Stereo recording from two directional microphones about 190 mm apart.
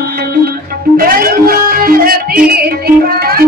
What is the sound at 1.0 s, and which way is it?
Music, 50° right (ahead or behind).